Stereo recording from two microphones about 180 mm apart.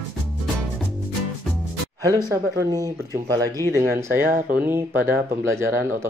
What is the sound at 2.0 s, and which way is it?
Speech, 20° right (ahead or behind).